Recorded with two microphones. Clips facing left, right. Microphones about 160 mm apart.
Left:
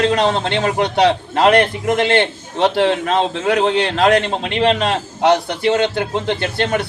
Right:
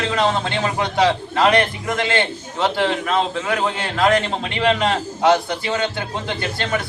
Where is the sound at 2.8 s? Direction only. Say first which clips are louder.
Left 4 dB; 35° left (ahead or behind).